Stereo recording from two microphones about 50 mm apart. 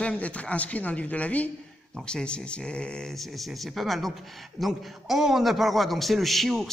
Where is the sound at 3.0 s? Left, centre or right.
Centre.